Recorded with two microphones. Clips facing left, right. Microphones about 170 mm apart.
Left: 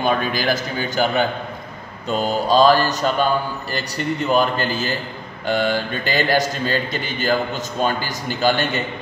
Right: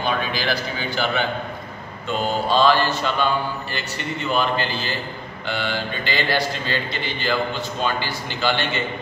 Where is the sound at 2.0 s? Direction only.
40° left (ahead or behind).